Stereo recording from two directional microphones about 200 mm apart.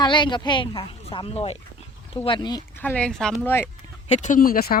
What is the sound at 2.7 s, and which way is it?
Speech, 10° left (ahead or behind).